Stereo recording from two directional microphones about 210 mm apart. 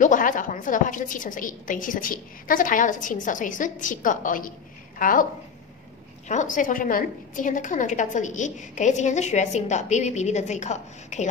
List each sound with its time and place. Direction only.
0.0 s a woman's voice: 40° left (ahead or behind)